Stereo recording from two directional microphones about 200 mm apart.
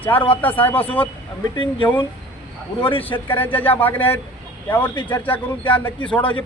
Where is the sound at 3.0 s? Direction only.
10° left (ahead or behind).